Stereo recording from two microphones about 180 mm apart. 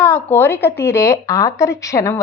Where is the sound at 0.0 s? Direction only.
10° left (ahead or behind).